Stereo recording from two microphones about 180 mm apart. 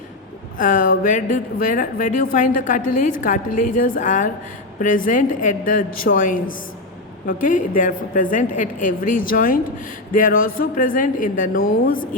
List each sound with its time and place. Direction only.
0.6 s speech: 50° left (ahead or behind)